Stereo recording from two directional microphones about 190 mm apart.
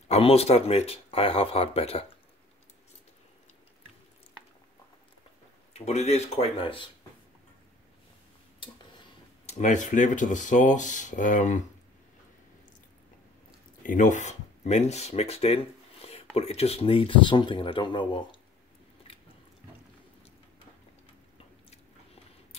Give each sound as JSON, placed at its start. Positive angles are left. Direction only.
{"t": 0.1, "sound": "speech", "side_deg": 30}
{"t": 5.7, "sound": "speech", "side_deg": 35}
{"t": 9.5, "sound": "speech", "side_deg": 40}
{"t": 13.8, "sound": "speech", "side_deg": 40}
{"t": 19.1, "sound": "a sound", "side_deg": 30}
{"t": 21.6, "sound": "biting", "side_deg": 30}